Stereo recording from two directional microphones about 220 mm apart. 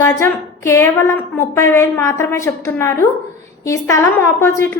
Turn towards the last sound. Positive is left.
turn(degrees=10)  # may be behind; listen again after turning